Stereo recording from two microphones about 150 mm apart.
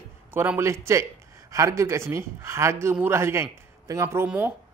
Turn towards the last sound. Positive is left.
turn(degrees=-20)  # may be behind; listen again after turning